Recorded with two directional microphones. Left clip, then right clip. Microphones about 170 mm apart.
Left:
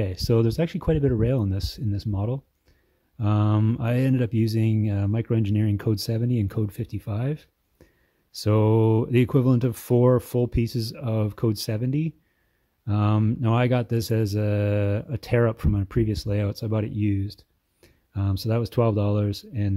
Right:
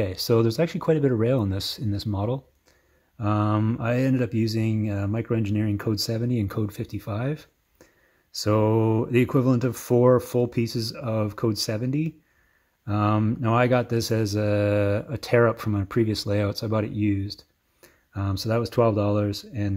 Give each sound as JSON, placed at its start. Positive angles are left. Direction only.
{"t": 0.0, "sound": "speech", "side_deg": 35}
{"t": 3.2, "sound": "speech", "side_deg": 40}